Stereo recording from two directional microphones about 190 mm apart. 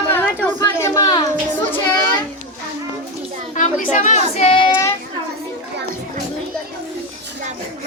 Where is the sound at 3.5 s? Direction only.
40° left (ahead or behind).